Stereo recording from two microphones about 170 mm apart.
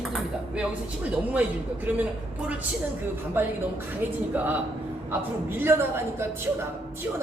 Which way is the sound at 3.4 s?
10° right (ahead or behind).